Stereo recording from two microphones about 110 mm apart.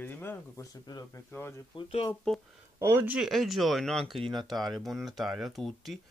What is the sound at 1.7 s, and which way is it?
Speech, 50° left (ahead or behind).